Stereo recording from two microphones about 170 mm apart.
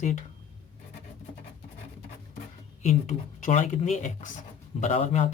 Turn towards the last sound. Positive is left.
turn(degrees=40)  # may be behind; listen again after turning